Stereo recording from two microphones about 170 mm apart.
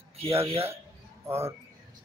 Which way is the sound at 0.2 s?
35° right (ahead or behind).